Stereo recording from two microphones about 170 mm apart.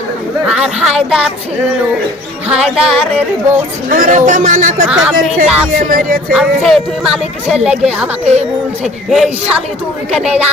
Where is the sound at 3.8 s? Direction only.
55° right (ahead or behind).